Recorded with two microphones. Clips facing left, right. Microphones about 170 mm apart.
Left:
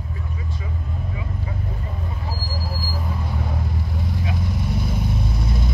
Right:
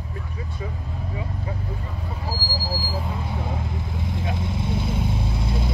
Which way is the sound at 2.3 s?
30° right (ahead or behind).